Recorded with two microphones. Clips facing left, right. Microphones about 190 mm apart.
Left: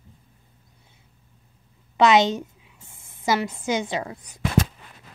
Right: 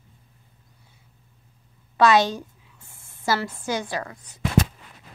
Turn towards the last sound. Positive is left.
turn(degrees=20)  # may be behind; listen again after turning